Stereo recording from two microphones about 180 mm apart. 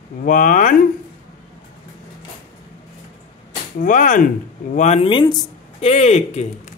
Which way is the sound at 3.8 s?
45° left (ahead or behind).